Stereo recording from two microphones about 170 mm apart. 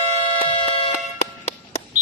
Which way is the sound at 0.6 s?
35° left (ahead or behind).